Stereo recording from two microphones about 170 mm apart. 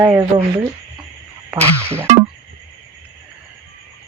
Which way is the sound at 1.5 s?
10° right (ahead or behind).